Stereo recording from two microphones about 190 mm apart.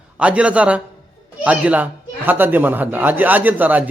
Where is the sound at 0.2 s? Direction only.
5° right (ahead or behind).